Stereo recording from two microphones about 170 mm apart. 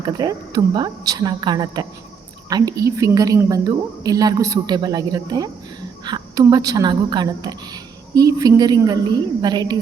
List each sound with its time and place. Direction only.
0.0 s a woman's voice: 25° right (ahead or behind)